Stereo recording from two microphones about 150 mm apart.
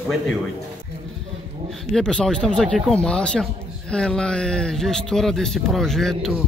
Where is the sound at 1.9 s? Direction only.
5° left (ahead or behind).